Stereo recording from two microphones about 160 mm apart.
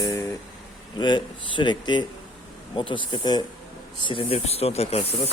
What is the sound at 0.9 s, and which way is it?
Speech, 30° left (ahead or behind).